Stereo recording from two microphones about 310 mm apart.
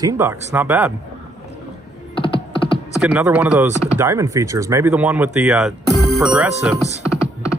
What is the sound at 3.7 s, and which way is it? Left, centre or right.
Speech, centre.